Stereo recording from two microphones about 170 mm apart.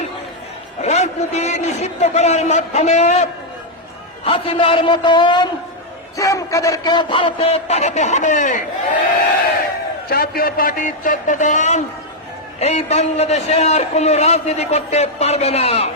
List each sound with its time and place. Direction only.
0.8 s a man's voice: 40° left (ahead or behind)
10.1 s a man's voice: 65° left (ahead or behind); by 15.9 s 35° left (ahead or behind)